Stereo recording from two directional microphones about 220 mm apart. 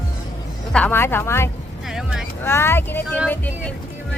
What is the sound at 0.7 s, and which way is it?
Speech, 10° left (ahead or behind).